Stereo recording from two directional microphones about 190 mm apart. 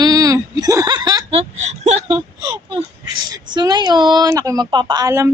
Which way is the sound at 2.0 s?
20° right (ahead or behind).